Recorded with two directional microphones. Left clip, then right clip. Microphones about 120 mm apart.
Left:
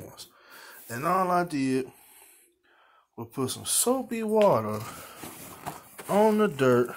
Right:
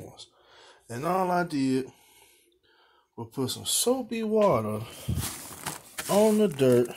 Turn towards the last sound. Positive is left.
turn(degrees=-30)  # may be behind; listen again after turning